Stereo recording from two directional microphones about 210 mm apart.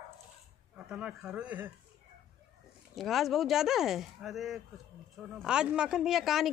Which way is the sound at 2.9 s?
Centre (ahead or behind).